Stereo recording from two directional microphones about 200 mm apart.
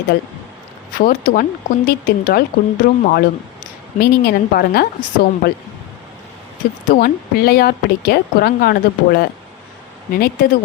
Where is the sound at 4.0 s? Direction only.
50° left (ahead or behind).